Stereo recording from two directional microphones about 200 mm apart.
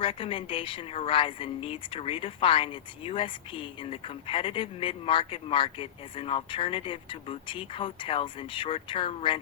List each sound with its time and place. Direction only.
0.0 s a woman's voice: 25° left (ahead or behind)